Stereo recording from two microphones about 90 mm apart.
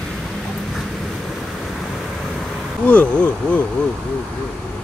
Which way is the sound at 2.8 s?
15° left (ahead or behind).